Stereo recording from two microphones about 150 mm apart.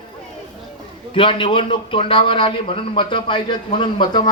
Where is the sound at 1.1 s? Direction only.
35° left (ahead or behind).